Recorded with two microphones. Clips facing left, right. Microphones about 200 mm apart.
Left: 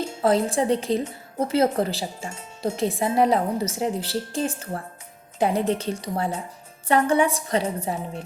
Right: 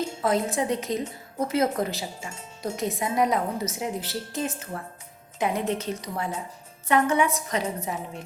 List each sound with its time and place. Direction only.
0.2 s a woman's voice: 30° left (ahead or behind)